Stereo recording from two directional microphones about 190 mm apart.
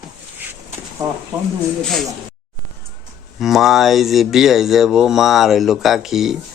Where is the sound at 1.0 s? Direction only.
15° right (ahead or behind).